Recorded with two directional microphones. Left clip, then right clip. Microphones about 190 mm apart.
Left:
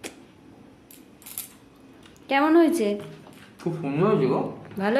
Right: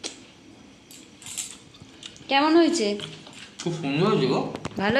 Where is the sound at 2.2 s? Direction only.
10° left (ahead or behind).